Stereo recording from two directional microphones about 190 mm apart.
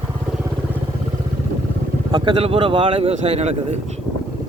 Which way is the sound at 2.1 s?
25° right (ahead or behind).